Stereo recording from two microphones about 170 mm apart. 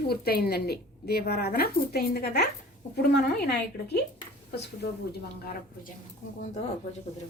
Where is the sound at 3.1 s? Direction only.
80° left.